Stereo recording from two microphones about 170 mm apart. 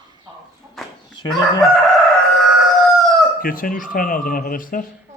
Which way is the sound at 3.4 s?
55° left (ahead or behind).